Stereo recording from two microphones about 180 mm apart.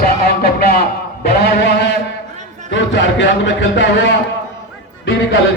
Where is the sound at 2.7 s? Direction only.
85° left.